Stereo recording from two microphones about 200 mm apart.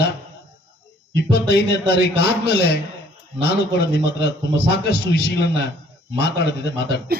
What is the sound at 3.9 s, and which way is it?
A man's voice, 55° left (ahead or behind).